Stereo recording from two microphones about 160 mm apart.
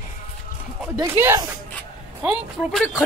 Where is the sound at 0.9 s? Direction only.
15° right (ahead or behind).